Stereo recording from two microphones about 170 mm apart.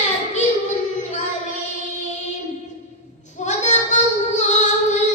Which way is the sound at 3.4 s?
45° left (ahead or behind).